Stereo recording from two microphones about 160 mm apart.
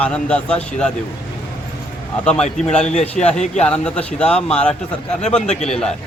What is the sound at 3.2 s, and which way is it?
A man's voice, 5° left (ahead or behind).